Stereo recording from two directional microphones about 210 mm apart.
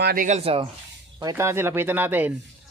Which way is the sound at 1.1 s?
15° right (ahead or behind).